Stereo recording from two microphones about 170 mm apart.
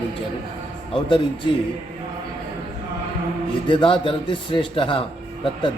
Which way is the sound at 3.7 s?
30° left (ahead or behind).